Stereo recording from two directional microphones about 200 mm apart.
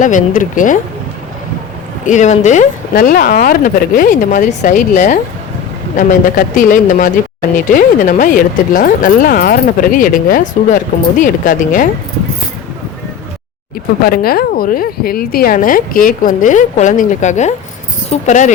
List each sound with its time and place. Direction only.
0.0 s speech: 40° left (ahead or behind)
2.0 s speech: 35° left (ahead or behind)
14.0 s speech: 50° left (ahead or behind)